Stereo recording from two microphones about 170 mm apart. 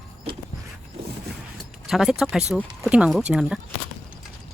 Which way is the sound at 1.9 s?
Centre (ahead or behind).